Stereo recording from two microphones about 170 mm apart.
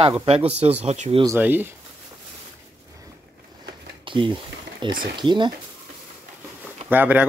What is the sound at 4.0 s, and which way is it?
Speech, 30° right (ahead or behind).